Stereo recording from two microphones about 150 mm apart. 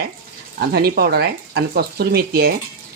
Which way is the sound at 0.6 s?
90° right.